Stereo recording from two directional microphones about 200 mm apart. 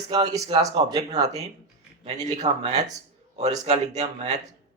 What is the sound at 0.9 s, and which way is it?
Speech, 20° right (ahead or behind).